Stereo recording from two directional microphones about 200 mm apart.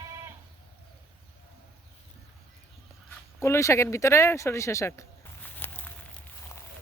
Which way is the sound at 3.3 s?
15° left (ahead or behind).